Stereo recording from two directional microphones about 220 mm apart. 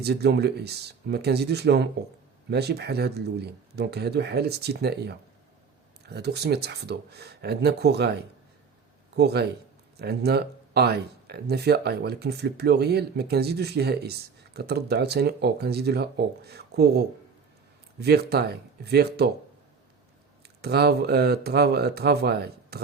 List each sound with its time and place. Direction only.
0.0 s speech: 50° right (ahead or behind)
20.6 s speech: 45° right (ahead or behind)